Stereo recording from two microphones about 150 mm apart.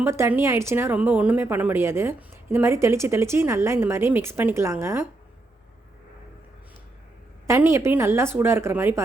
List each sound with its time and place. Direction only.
0.0 s a woman's voice: 15° right (ahead or behind)
7.4 s a woman's voice: 20° right (ahead or behind)